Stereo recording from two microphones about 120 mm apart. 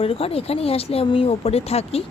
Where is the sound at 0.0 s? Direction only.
55° left (ahead or behind).